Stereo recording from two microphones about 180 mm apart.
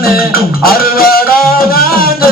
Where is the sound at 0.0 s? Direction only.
55° left (ahead or behind).